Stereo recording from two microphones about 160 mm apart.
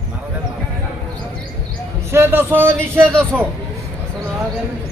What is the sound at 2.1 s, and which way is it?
Speech, 15° right (ahead or behind).